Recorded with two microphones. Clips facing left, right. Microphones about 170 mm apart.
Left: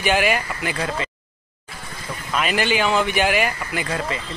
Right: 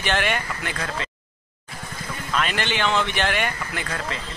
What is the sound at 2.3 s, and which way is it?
Speech, 10° left (ahead or behind).